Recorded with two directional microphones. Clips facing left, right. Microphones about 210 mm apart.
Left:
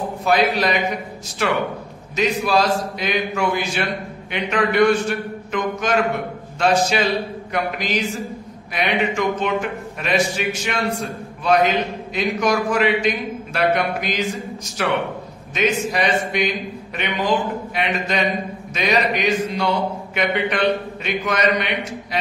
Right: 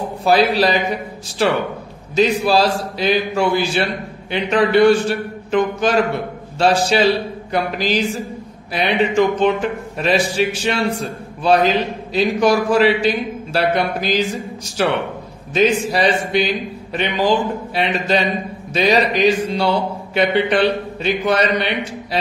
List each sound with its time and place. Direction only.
0.2 s a man's voice: 30° right (ahead or behind)